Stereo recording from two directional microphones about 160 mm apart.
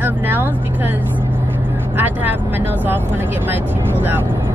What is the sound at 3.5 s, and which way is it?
Speech, 10° right (ahead or behind).